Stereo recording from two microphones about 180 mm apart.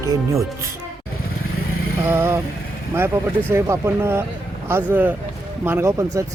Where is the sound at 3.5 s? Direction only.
15° right (ahead or behind).